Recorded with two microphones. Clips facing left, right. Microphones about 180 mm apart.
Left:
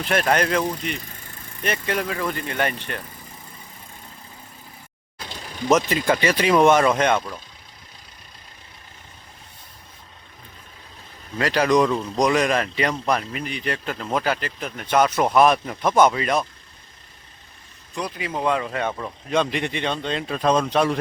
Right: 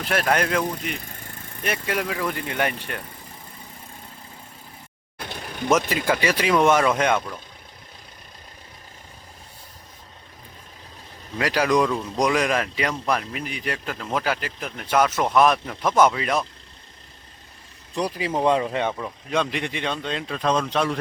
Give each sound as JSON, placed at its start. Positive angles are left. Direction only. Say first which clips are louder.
{"t": 0.0, "sound": "speech", "louder": "left 2 dB", "side_deg": -5}
{"t": 5.2, "sound": "a sound", "louder": "right 2 dB", "side_deg": -60}
{"t": 5.9, "sound": "speech", "louder": "left 2 dB", "side_deg": -5}
{"t": 11.3, "sound": "speech", "louder": "left 2 dB", "side_deg": -10}
{"t": 16.0, "sound": "speech", "louder": "left 1 dB", "side_deg": -5}
{"t": 17.9, "sound": "speech", "louder": "right 3 dB", "side_deg": -30}
{"t": 18.9, "sound": "speech", "louder": "left 2 dB", "side_deg": 0}
{"t": 20.3, "sound": "speech", "louder": "left 3 dB", "side_deg": 10}